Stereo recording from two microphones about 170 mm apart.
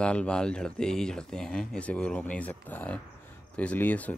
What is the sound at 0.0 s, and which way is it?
Speech, 5° left (ahead or behind).